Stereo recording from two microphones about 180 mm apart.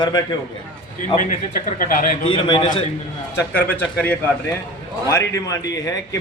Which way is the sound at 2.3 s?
25° left (ahead or behind).